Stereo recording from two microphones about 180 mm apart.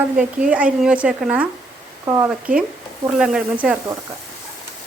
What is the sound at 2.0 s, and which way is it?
Speech, 20° right (ahead or behind).